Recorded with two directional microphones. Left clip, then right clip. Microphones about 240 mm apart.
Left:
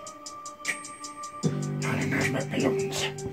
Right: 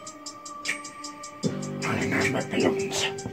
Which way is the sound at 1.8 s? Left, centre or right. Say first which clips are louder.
Right 3 dB; centre.